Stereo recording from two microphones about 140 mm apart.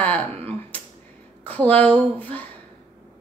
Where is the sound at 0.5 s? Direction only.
10° left (ahead or behind).